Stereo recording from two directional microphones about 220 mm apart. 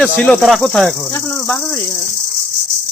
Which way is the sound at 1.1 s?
10° left (ahead or behind).